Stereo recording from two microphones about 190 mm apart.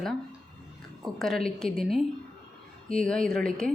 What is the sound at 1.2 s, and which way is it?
A woman's voice, centre (ahead or behind).